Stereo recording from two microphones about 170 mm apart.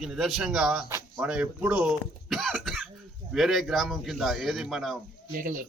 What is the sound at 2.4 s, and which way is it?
Cough, 5° left (ahead or behind).